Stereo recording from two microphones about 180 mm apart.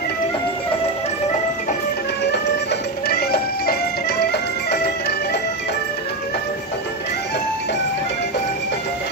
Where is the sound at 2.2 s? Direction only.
70° left (ahead or behind).